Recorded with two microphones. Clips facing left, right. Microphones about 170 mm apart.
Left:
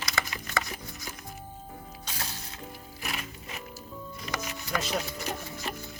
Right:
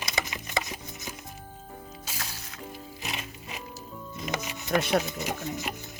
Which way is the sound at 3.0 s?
20° right (ahead or behind).